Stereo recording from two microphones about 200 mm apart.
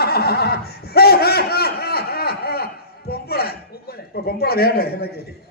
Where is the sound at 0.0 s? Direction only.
50° left (ahead or behind).